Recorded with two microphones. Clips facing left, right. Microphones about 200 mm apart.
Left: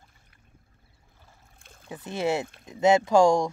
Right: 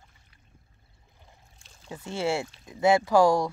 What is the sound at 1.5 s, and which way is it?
Boat, 55° left (ahead or behind).